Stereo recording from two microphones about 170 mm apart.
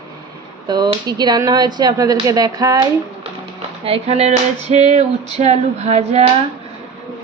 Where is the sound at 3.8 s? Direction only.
35° right (ahead or behind).